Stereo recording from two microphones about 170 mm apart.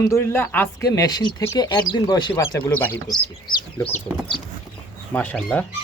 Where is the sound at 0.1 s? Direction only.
15° left (ahead or behind).